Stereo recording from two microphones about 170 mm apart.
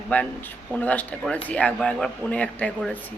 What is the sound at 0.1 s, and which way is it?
Speech, 10° left (ahead or behind).